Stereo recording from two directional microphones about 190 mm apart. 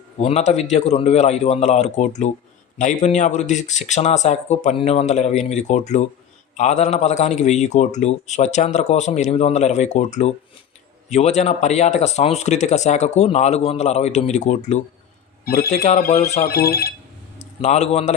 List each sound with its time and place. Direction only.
0.2 s a man's voice: 35° left (ahead or behind)
16.4 s speech: 55° left (ahead or behind)
17.6 s a man's voice: 35° left (ahead or behind)